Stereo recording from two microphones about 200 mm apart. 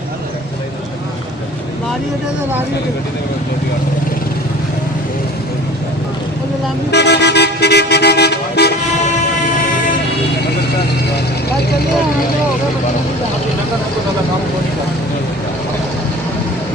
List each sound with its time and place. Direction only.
6.9 s vehicle: 60° left (ahead or behind)